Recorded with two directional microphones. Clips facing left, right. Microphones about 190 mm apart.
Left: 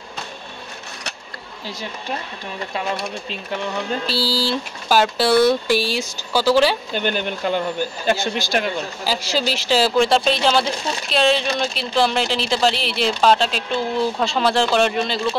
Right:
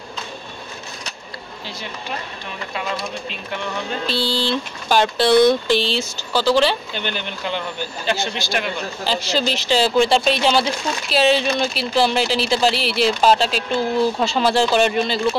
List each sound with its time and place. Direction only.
4.1 s speech: 5° left (ahead or behind)
6.9 s speech: 45° left (ahead or behind)
9.0 s speech: 5° left (ahead or behind)